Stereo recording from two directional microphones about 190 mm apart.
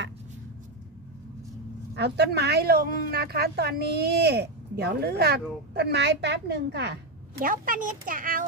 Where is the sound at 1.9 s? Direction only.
60° right (ahead or behind).